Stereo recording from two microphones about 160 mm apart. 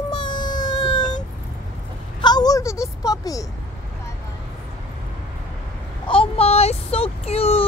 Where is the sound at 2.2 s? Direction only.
25° left (ahead or behind).